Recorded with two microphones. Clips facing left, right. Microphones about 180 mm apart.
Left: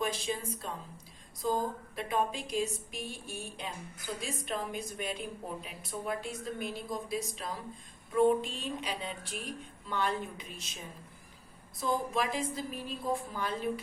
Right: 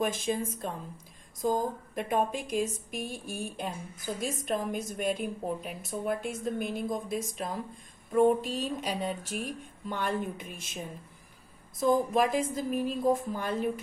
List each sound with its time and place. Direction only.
0.0 s a woman's voice: 50° right (ahead or behind)
11.8 s a woman's voice: 50° right (ahead or behind)